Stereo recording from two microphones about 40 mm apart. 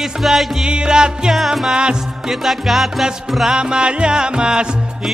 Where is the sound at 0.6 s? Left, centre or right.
Right.